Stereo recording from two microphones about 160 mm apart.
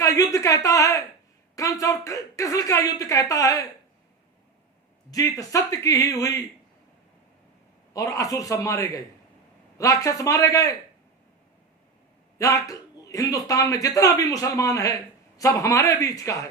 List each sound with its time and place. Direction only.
0.0 s a man's voice: 20° left (ahead or behind)
5.1 s a man's voice: 20° left (ahead or behind)
7.9 s a man's voice: 20° left (ahead or behind)
12.4 s a man's voice: 20° left (ahead or behind)